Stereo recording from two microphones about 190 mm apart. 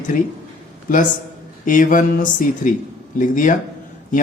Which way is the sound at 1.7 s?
45° left (ahead or behind).